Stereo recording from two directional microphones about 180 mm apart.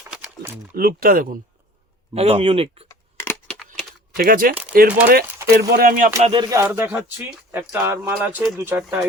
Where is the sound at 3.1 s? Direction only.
10° left (ahead or behind).